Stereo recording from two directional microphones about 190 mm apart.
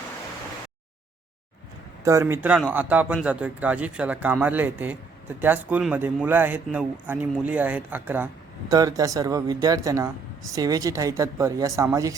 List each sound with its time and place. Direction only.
2.0 s speech: 15° right (ahead or behind)